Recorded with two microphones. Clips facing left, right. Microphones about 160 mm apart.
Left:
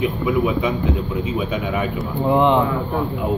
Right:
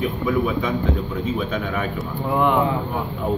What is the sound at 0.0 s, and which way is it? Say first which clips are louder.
Speech: left 2 dB; 10° left (ahead or behind).